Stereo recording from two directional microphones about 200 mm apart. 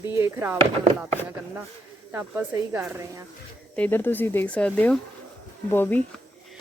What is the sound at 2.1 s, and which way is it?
Speech, 10° right (ahead or behind).